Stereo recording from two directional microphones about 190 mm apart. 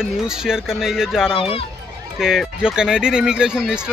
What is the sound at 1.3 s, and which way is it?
Speech, 30° left (ahead or behind).